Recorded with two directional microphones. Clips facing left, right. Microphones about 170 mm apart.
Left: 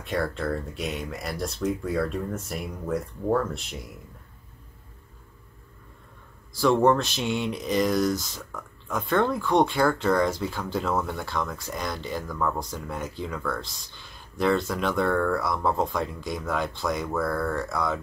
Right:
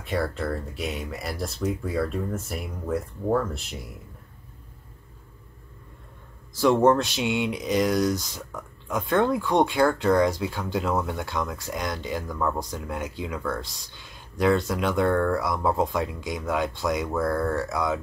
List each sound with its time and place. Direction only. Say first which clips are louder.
0.0 s speech: even; centre (ahead or behind)
6.6 s speech: right 1 dB; 20° right (ahead or behind)
8.1 s speech: even; centre (ahead or behind)
15.7 s speech: right 2 dB; 5° right (ahead or behind)
17.7 s speech: right 1 dB; 5° right (ahead or behind)